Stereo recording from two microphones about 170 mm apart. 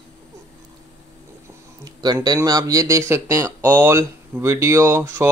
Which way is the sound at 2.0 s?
25° right (ahead or behind).